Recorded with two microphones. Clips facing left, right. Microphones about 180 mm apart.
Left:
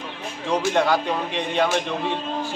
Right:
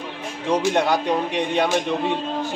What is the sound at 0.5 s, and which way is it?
A woman's voice, 20° right (ahead or behind).